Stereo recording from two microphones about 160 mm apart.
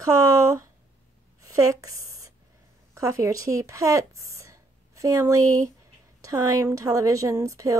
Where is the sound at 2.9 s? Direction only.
20° right (ahead or behind).